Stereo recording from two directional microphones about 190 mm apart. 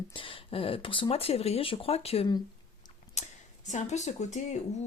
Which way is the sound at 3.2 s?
35° left (ahead or behind).